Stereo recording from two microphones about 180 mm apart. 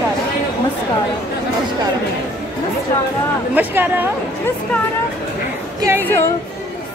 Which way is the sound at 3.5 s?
10° right (ahead or behind).